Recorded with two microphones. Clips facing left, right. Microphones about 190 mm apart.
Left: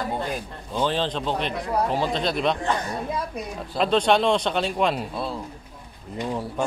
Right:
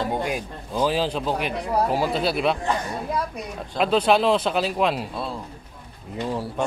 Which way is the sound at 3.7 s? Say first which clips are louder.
Right 1 dB; 5° right (ahead or behind).